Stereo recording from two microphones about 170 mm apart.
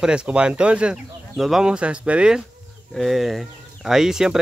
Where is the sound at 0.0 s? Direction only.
5° right (ahead or behind).